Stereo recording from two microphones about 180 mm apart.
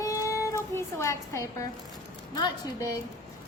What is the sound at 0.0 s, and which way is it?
Music, 15° left (ahead or behind).